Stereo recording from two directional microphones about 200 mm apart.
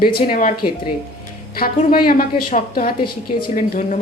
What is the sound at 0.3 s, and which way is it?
Speech, 40° left (ahead or behind).